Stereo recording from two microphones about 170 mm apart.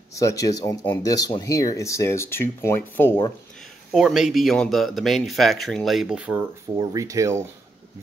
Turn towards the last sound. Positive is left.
turn(degrees=-20)  # may be behind; listen again after turning